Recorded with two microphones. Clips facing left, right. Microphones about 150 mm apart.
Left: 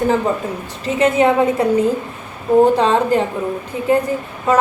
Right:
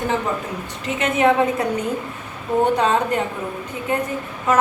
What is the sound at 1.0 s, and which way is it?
Speech, 30° left (ahead or behind).